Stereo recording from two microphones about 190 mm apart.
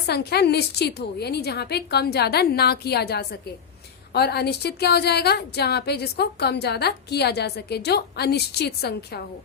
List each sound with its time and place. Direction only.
0.1 s a woman's voice: 60° left (ahead or behind)